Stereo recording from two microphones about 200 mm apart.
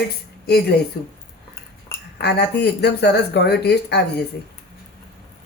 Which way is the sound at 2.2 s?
55° left (ahead or behind).